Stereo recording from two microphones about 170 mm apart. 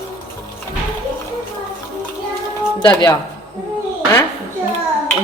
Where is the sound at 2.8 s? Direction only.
25° left (ahead or behind).